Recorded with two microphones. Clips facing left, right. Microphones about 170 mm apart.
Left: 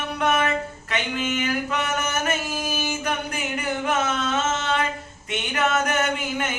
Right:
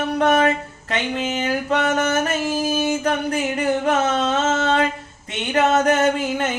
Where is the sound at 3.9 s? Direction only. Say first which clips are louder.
Right 5 dB; 35° right (ahead or behind).